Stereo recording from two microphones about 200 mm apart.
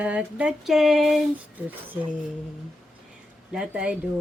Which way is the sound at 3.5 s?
5° right (ahead or behind).